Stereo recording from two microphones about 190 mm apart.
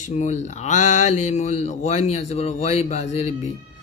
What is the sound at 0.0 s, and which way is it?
Mantra, 40° left (ahead or behind).